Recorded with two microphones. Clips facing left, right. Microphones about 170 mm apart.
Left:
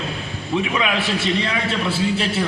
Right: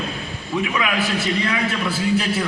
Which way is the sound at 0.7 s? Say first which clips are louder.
Left 1 dB; 25° left (ahead or behind).